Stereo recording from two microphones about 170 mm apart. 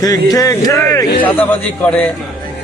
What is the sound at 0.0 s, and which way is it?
Speech, 20° left (ahead or behind).